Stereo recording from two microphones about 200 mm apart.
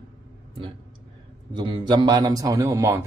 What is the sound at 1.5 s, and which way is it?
Speech, 25° right (ahead or behind).